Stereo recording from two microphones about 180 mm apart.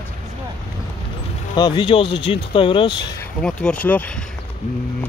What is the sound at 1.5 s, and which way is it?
Speech, 25° left (ahead or behind).